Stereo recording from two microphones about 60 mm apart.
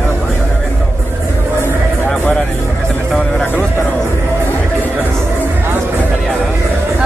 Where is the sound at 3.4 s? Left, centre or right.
Left.